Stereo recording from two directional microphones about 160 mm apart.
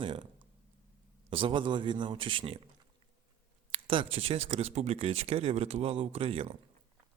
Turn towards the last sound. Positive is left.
turn(degrees=-35)  # may be behind; listen again after turning